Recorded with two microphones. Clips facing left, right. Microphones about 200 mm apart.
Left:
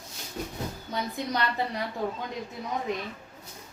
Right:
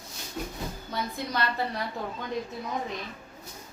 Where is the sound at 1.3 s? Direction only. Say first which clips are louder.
Left 1 dB; 15° left (ahead or behind).